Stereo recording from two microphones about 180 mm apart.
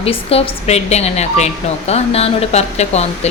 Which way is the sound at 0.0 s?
35° left (ahead or behind).